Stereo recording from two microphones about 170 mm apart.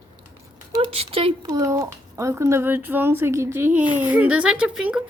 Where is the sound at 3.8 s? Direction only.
25° left (ahead or behind).